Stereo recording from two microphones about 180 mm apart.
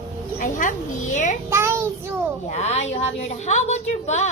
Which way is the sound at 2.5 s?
40° left (ahead or behind).